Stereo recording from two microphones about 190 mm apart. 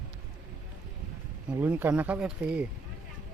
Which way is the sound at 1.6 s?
10° right (ahead or behind).